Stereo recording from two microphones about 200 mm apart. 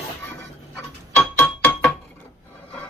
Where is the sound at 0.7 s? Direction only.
5° left (ahead or behind).